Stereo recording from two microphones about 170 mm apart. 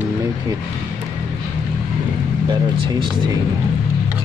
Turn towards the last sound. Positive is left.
turn(degrees=-30)  # may be behind; listen again after turning